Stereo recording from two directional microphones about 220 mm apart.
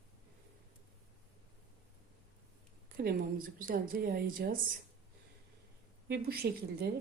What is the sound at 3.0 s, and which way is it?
Speech, 45° right (ahead or behind).